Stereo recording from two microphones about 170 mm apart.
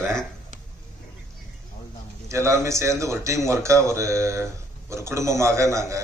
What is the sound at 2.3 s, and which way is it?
Speech, 15° right (ahead or behind).